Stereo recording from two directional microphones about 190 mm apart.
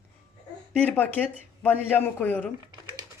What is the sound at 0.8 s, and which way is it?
Speech, 10° left (ahead or behind).